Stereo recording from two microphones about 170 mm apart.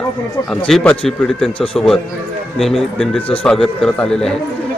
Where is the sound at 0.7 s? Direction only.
Centre (ahead or behind).